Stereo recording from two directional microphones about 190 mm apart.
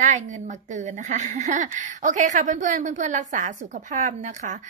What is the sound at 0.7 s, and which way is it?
Speech, 40° right (ahead or behind).